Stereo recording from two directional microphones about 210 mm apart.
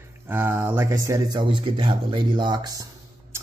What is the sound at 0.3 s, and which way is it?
Speech, 10° right (ahead or behind).